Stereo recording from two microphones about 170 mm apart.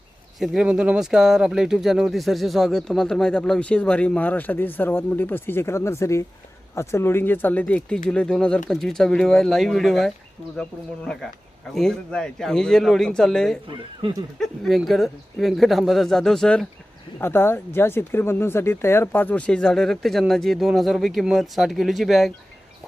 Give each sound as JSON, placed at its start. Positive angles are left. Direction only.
{"t": 0.3, "sound": "speech", "side_deg": 0}
{"t": 14.0, "sound": "speech", "side_deg": -30}
{"t": 14.3, "sound": "speech", "side_deg": 0}